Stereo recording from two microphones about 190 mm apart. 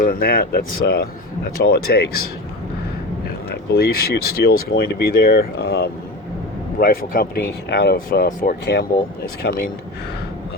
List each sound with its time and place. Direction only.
0.0 s speech: 50° left (ahead or behind)
3.2 s speech: 60° left (ahead or behind)